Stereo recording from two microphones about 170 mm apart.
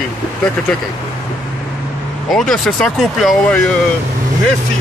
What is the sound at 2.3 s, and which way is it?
Speech, centre (ahead or behind).